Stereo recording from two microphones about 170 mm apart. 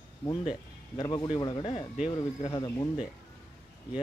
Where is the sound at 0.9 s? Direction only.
25° left (ahead or behind).